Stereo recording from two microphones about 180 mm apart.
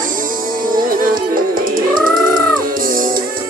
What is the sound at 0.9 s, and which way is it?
Music, 50° right (ahead or behind).